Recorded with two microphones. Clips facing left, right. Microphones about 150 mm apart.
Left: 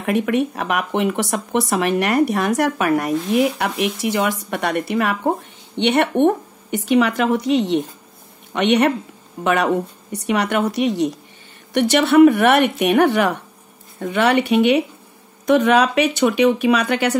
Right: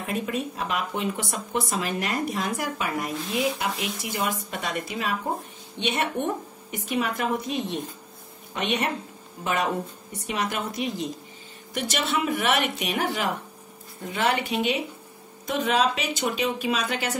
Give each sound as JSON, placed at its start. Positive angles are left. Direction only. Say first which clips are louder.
{"t": 0.0, "sound": "speech", "louder": "left 10 dB", "side_deg": 75}